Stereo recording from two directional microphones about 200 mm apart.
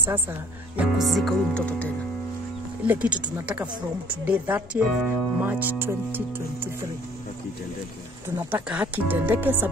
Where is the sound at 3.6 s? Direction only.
25° right (ahead or behind).